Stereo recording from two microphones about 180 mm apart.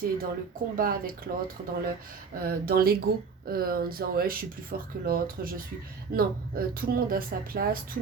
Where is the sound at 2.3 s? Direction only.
55° right (ahead or behind).